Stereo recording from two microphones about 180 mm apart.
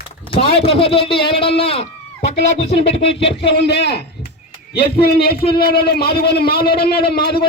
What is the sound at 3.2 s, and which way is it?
Speech, 65° left (ahead or behind).